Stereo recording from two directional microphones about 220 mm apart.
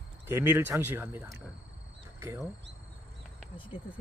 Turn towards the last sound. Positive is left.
turn(degrees=25)  # may be behind; listen again after turning